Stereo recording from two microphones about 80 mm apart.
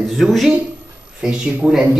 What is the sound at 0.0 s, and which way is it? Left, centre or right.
Speech, centre.